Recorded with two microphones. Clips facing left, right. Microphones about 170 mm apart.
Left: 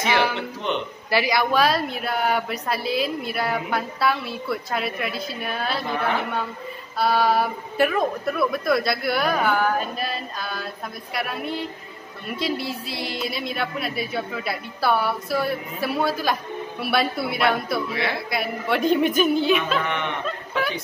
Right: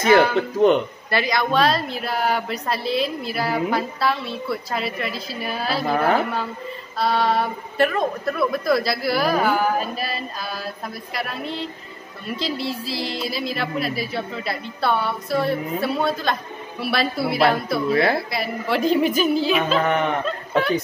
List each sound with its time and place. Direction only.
0.1 s speech: 45° right (ahead or behind)
1.1 s a woman's voice: 10° left (ahead or behind)
5.9 s speech: 40° right (ahead or behind)
7.0 s a woman's voice: 5° left (ahead or behind)
12.4 s a woman's voice: centre (ahead or behind)
17.8 s speech: 40° right (ahead or behind)
18.3 s a woman's voice: centre (ahead or behind)
19.8 s speech: 40° right (ahead or behind)